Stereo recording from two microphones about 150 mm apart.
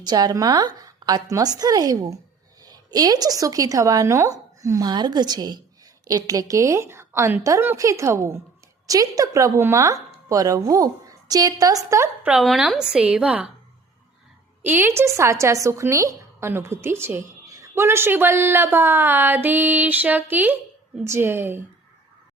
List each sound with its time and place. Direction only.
0.0 s a woman's voice: 25° right (ahead or behind)
12.3 s a woman's voice: centre (ahead or behind)
14.6 s a woman's voice: 15° right (ahead or behind)